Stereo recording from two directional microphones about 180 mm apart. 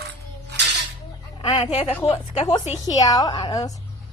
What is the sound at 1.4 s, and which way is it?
Speech, 25° left (ahead or behind).